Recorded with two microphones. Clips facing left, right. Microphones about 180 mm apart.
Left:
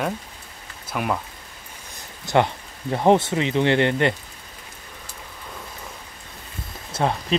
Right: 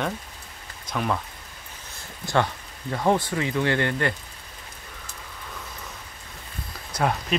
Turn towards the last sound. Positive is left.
turn(degrees=25)  # may be behind; listen again after turning